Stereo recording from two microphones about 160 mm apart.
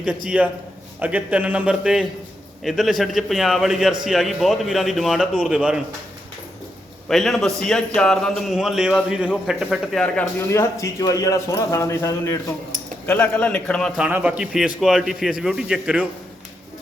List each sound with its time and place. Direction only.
0.3 s a man's voice: 5° right (ahead or behind)
7.1 s a man's voice: centre (ahead or behind)
9.6 s speech: 5° left (ahead or behind)
10.5 s a man's voice: 20° left (ahead or behind); by 16.0 s 5° right (ahead or behind)